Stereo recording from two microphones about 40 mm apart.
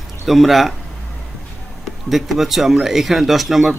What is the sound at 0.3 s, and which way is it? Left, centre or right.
Speech, centre.